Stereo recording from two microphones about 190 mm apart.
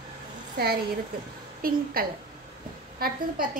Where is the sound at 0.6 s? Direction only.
55° right (ahead or behind).